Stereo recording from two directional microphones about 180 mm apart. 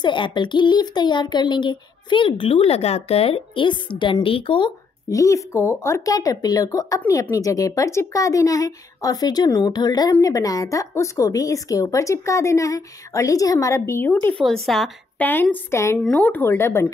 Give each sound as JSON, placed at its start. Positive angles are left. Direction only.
{"t": 0.0, "sound": "a child's voice", "side_deg": 25}